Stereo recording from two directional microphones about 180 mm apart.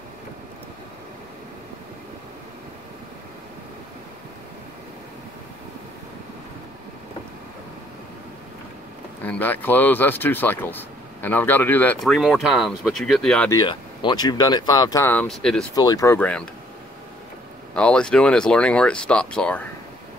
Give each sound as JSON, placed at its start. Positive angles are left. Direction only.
{"t": 9.2, "sound": "speech", "side_deg": 10}
{"t": 13.5, "sound": "speech", "side_deg": 25}
{"t": 15.7, "sound": "speech", "side_deg": 20}
{"t": 17.7, "sound": "speech", "side_deg": 5}